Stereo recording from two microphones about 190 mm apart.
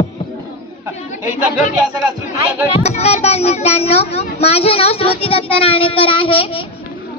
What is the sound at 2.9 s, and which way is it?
A child's voice, 35° left (ahead or behind).